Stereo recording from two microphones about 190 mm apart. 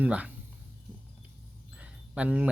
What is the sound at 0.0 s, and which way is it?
Speech, 10° right (ahead or behind).